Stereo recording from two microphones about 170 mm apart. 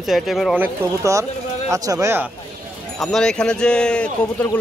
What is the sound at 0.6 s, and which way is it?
Speech, 20° right (ahead or behind).